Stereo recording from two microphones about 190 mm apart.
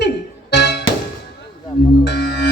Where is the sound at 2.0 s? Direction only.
60° left (ahead or behind).